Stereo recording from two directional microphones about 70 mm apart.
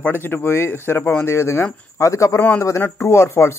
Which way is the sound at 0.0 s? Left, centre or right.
Left.